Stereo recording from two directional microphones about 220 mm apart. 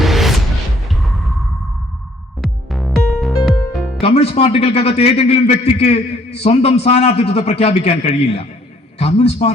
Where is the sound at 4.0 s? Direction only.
30° left (ahead or behind).